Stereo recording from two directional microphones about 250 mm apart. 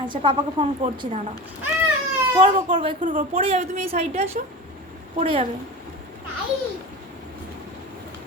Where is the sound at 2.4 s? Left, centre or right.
Right.